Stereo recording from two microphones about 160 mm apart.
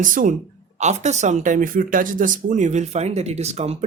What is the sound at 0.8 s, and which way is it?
Speech, 45° right (ahead or behind).